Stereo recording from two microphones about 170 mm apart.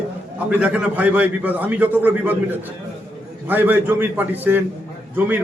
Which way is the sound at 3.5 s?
10° right (ahead or behind).